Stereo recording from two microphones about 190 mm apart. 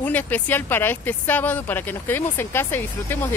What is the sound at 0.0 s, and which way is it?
A woman's voice, 10° left (ahead or behind).